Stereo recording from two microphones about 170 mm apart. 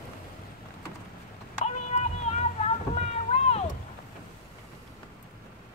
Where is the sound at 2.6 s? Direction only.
40° left (ahead or behind).